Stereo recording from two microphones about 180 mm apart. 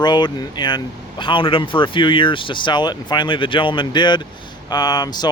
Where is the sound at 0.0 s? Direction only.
25° left (ahead or behind).